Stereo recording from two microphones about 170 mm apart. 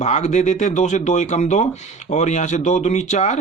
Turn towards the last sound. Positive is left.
turn(degrees=45)  # may be behind; listen again after turning